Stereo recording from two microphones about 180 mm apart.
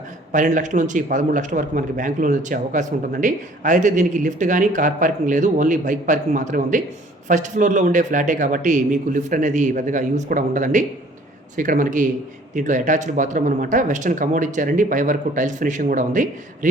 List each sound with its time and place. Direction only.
0.3 s a man's voice: 45° right (ahead or behind)